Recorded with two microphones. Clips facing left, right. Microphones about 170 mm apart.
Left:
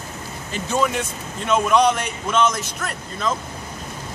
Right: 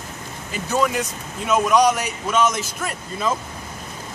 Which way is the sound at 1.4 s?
5° right (ahead or behind).